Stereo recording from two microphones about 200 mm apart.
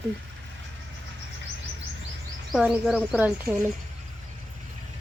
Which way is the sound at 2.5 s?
Centre (ahead or behind).